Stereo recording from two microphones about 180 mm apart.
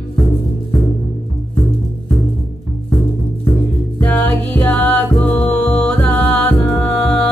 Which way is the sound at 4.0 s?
10° left (ahead or behind).